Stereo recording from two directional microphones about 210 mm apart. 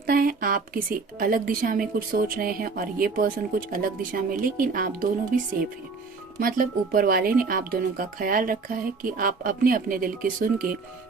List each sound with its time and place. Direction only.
0.0 s speech: 45° right (ahead or behind)
6.4 s speech: 45° right (ahead or behind)